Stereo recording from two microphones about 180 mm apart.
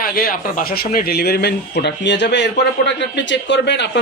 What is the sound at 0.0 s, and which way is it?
Speech, 55° left (ahead or behind).